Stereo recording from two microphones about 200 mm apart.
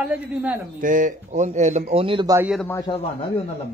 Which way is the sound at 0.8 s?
40° right (ahead or behind).